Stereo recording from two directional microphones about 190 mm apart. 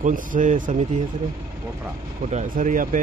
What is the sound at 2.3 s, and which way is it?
Speech, 40° right (ahead or behind).